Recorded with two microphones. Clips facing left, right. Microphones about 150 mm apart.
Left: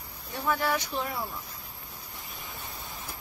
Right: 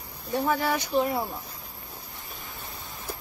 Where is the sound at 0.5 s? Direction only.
40° right (ahead or behind).